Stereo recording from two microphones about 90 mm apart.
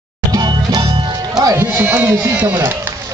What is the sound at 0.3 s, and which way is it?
Music, 50° right (ahead or behind).